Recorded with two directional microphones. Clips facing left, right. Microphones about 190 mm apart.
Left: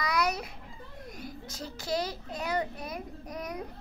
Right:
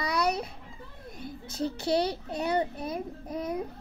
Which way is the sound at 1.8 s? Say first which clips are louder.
Right 4 dB; 30° right (ahead or behind).